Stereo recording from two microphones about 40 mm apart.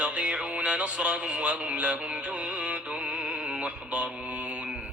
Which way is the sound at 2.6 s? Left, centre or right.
Right.